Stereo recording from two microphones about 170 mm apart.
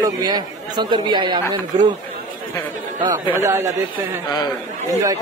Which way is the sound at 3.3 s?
15° right (ahead or behind).